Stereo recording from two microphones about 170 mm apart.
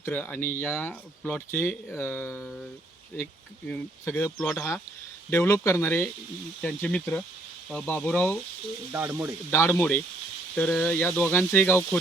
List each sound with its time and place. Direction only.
0.0 s speech: 10° left (ahead or behind)
3.7 s speech: 10° left (ahead or behind)
8.9 s speech: 15° right (ahead or behind)
9.5 s speech: 15° left (ahead or behind)